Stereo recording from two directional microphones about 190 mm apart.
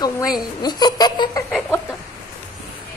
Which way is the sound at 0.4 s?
20° left (ahead or behind).